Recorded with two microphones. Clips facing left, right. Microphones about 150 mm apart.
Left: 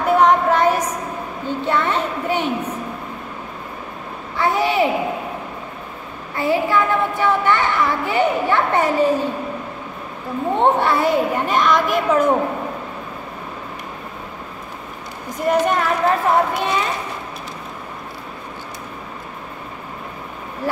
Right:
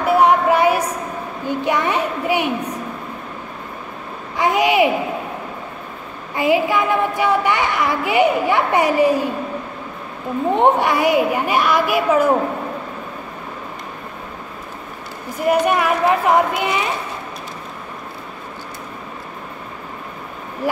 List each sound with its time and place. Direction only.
0.0 s a sound: 10° right (ahead or behind)
1.5 s a woman's voice: 15° right (ahead or behind)
4.4 s a sound: 15° right (ahead or behind)
6.3 s a woman's voice: 15° right (ahead or behind)
10.6 s a woman's voice: 15° right (ahead or behind)
15.4 s a woman's voice: 10° right (ahead or behind)